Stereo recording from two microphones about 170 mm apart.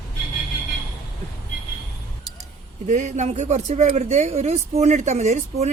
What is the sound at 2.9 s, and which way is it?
A woman's voice, 45° right (ahead or behind).